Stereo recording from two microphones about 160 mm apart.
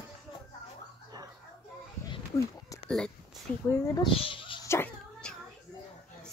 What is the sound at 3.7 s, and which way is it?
Speech, 20° left (ahead or behind).